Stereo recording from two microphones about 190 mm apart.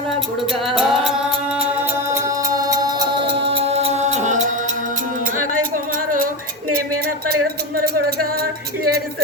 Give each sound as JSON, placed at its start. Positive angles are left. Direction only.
{"t": 0.7, "sound": "music", "side_deg": 0}
{"t": 1.5, "sound": "music", "side_deg": -10}